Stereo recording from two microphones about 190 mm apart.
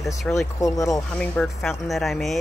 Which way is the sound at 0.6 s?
15° left (ahead or behind).